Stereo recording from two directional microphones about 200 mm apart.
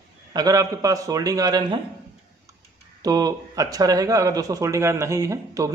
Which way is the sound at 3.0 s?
20° right (ahead or behind).